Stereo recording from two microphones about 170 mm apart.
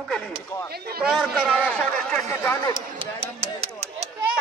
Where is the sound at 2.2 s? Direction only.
15° left (ahead or behind).